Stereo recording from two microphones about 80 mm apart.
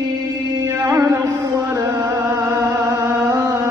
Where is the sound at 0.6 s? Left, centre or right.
Right.